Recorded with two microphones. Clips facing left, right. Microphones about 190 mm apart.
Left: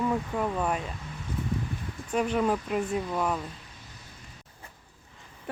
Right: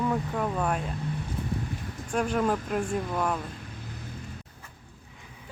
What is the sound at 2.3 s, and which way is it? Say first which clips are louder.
Speech: right 1 dB; 5° left (ahead or behind).